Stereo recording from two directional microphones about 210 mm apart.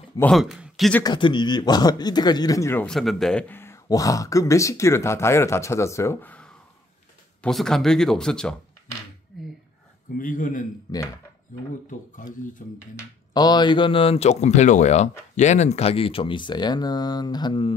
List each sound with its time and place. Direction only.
0.2 s speech: centre (ahead or behind)
1.0 s speech: 20° left (ahead or behind); by 8.5 s 5° left (ahead or behind)
9.3 s a sound: centre (ahead or behind)
10.1 s speech: 40° left (ahead or behind)
12.9 s speech: 20° left (ahead or behind)